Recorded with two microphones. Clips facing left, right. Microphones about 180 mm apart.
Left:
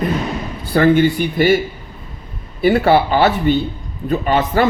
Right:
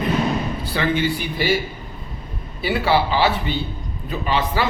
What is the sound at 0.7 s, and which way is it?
Speech, 50° left (ahead or behind).